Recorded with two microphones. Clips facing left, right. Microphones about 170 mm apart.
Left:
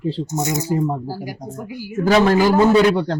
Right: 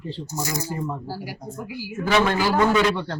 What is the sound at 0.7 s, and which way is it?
Speech, 40° left (ahead or behind).